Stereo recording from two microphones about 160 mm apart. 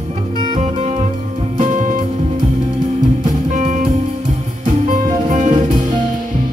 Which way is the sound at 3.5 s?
50° right (ahead or behind).